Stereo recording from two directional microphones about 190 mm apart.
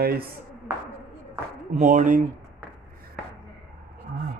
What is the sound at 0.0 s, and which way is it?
Speech, 55° right (ahead or behind).